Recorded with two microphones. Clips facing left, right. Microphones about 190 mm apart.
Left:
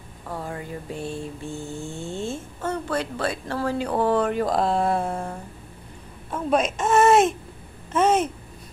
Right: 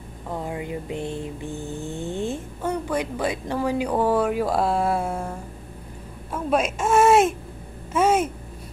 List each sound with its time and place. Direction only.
0.3 s mantra: 20° right (ahead or behind)
6.3 s speech: 5° right (ahead or behind)
7.9 s mantra: 10° right (ahead or behind)